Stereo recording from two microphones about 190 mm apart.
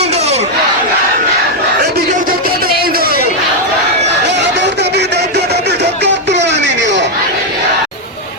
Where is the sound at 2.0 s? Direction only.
50° right (ahead or behind).